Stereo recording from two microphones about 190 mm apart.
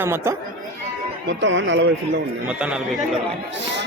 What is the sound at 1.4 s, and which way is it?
Speech, 75° right (ahead or behind).